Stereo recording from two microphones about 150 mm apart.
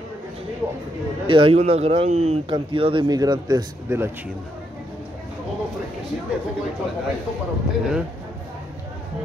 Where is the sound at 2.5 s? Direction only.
35° right (ahead or behind).